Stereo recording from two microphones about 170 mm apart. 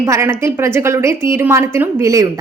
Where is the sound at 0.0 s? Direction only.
15° right (ahead or behind).